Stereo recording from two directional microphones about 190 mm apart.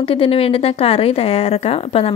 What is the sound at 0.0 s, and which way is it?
Speech, 30° left (ahead or behind).